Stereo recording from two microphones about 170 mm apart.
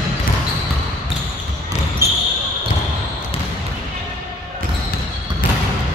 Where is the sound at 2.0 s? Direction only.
15° right (ahead or behind).